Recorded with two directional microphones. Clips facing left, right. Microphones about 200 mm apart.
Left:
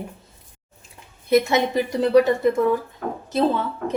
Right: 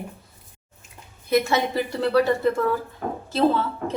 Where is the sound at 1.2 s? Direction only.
20° left (ahead or behind).